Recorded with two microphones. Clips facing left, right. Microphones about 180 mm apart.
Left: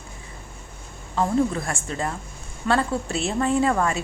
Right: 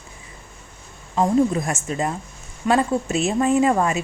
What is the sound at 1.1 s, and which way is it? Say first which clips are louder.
A woman's voice: right 4 dB; 20° right (ahead or behind).